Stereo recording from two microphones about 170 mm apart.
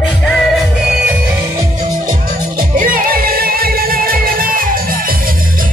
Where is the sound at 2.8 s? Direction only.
55° right (ahead or behind).